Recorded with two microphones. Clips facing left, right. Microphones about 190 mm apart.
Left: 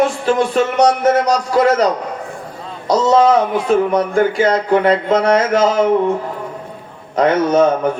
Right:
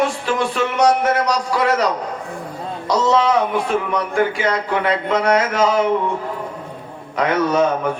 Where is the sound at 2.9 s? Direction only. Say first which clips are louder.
Left 5 dB; 45° left (ahead or behind).